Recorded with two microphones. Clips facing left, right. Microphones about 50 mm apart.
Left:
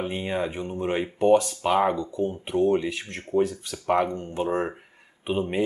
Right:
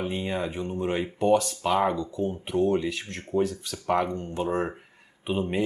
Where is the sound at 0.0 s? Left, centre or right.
Centre.